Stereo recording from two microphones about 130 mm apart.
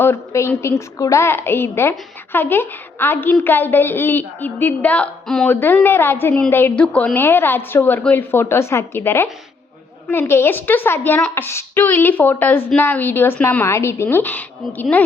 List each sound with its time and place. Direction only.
0.0 s a woman's voice: 20° left (ahead or behind)